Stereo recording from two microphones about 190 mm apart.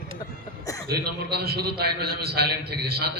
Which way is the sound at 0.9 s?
55° right (ahead or behind).